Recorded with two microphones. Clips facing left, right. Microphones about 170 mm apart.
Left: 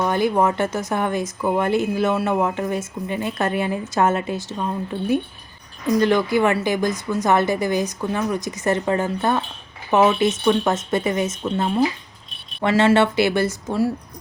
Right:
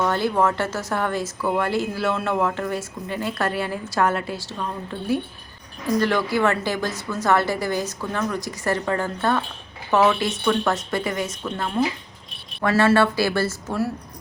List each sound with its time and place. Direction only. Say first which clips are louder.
0.0 s a woman's voice: left 2 dB; 15° left (ahead or behind)